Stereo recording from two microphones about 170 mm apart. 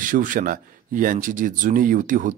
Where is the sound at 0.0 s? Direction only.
50° right (ahead or behind).